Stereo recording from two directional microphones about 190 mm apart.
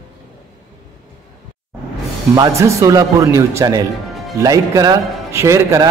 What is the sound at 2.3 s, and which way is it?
Speech, 20° right (ahead or behind).